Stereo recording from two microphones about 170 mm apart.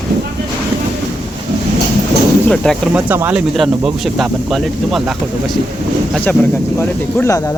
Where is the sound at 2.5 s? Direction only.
5° left (ahead or behind).